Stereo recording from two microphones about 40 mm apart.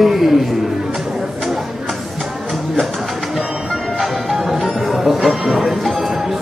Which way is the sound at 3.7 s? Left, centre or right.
Centre.